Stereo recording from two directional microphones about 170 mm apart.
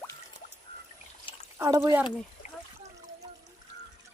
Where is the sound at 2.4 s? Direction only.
45° left (ahead or behind).